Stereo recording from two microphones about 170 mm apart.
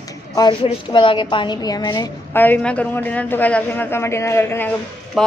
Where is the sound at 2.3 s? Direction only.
10° left (ahead or behind).